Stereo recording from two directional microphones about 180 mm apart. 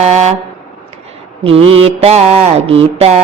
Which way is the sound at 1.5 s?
30° right (ahead or behind).